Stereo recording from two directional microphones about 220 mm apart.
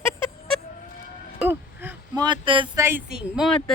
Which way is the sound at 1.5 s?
10° right (ahead or behind).